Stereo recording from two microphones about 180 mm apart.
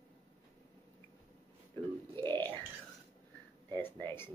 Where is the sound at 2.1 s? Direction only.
25° right (ahead or behind).